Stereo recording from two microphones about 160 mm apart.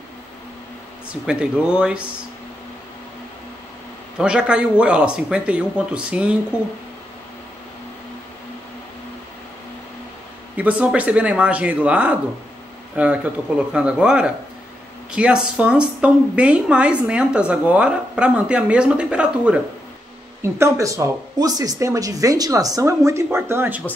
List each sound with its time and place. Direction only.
1.2 s speech: 5° right (ahead or behind)
4.2 s speech: 5° right (ahead or behind)
10.5 s speech: 10° right (ahead or behind)
20.5 s speech: 20° right (ahead or behind)